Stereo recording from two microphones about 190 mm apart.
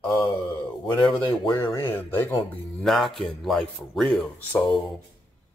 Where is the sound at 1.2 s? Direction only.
25° left (ahead or behind).